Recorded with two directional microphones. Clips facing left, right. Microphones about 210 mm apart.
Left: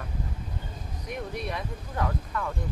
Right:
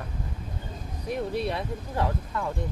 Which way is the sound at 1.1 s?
30° right (ahead or behind).